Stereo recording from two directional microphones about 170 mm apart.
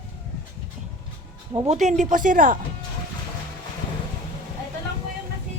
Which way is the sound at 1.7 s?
45° right (ahead or behind).